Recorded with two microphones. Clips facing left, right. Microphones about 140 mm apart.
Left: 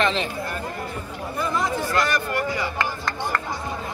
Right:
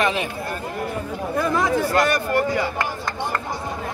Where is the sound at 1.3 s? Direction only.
90° right.